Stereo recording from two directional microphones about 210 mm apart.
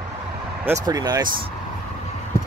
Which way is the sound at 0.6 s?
15° right (ahead or behind).